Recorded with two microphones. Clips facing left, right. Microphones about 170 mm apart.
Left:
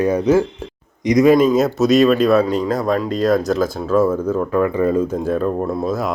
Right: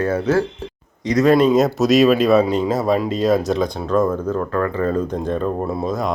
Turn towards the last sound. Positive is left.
turn(degrees=5)  # may be behind; listen again after turning